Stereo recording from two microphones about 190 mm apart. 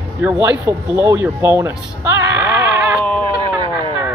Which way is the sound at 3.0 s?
5° left (ahead or behind).